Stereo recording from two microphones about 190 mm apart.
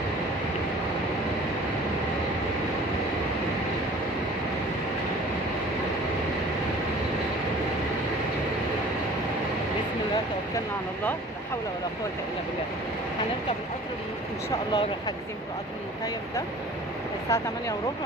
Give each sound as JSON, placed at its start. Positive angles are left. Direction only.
{"t": 14.5, "sound": "speech", "side_deg": 25}
{"t": 17.3, "sound": "speech", "side_deg": 15}